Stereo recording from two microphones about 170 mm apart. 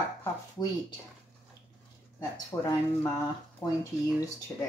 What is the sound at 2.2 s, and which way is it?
Speech, 20° left (ahead or behind).